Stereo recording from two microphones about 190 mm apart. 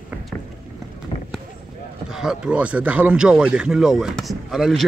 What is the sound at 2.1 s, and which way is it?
Speech, 5° right (ahead or behind).